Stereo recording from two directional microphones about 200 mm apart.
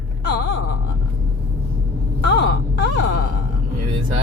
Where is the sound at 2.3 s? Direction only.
60° left (ahead or behind).